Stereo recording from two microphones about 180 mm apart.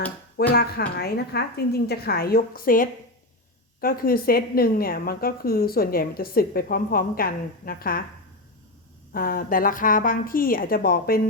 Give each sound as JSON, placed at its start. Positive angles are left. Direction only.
{"t": 0.5, "sound": "a woman's voice", "side_deg": 60}
{"t": 9.1, "sound": "a woman's voice", "side_deg": 55}